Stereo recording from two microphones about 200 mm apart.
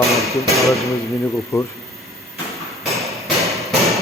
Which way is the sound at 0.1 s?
Centre (ahead or behind).